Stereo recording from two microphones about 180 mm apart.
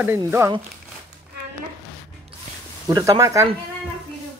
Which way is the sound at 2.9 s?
20° right (ahead or behind).